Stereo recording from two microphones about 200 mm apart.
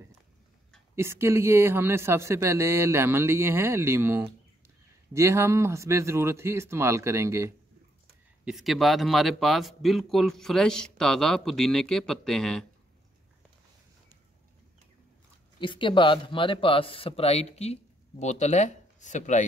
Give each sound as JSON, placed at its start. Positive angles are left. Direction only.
{"t": 0.9, "sound": "a man's voice", "side_deg": -15}
{"t": 8.5, "sound": "speech", "side_deg": 0}
{"t": 15.6, "sound": "speech", "side_deg": 25}